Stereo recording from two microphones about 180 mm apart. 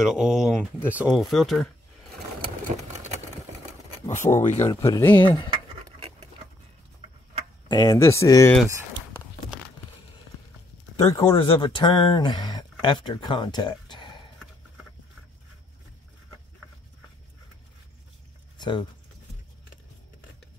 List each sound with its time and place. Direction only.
0.0 s speech: 5° right (ahead or behind)
4.1 s speech: 45° left (ahead or behind)
4.6 s speech: 20° left (ahead or behind)
5.2 s speech: 25° left (ahead or behind)
5.9 s patter: 35° right (ahead or behind)
7.6 s speech: 20° left (ahead or behind)
11.0 s speech: 15° left (ahead or behind)
11.2 s speech: 30° left (ahead or behind)
18.6 s speech: 25° left (ahead or behind)